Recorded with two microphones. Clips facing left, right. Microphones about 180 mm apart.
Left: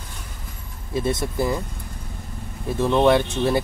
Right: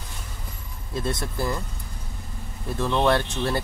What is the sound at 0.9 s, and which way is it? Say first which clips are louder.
Speech: left 5 dB; 15° left (ahead or behind).